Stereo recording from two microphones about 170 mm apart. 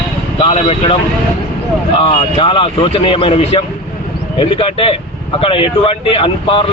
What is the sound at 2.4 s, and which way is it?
Speech, 30° left (ahead or behind).